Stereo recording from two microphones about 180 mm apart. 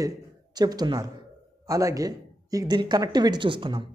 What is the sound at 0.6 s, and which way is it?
A man's voice, 20° right (ahead or behind).